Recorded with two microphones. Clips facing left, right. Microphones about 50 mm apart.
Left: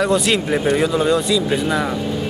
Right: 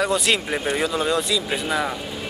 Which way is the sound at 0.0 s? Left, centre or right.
Centre.